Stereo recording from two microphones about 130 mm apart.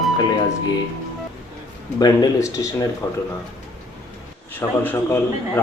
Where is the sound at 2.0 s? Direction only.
30° left (ahead or behind).